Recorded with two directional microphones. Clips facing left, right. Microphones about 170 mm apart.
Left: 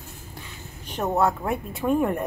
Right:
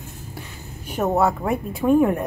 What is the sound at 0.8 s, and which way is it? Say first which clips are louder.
A woman's voice: right 3 dB; 5° right (ahead or behind).